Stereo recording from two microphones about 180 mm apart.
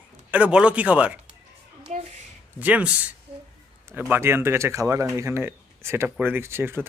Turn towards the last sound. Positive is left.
turn(degrees=-15)  # may be behind; listen again after turning